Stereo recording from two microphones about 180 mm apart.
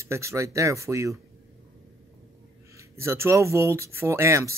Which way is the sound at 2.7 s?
15° right (ahead or behind).